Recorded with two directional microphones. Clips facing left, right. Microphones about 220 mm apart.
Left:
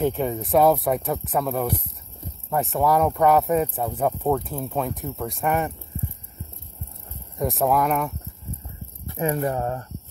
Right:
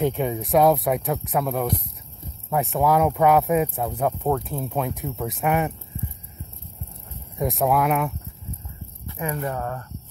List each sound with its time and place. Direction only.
0.0 s speech: centre (ahead or behind)
7.3 s speech: centre (ahead or behind)
9.0 s speech: 35° left (ahead or behind)